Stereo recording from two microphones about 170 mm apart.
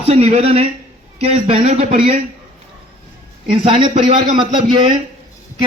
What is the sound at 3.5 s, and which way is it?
Speech, 35° right (ahead or behind).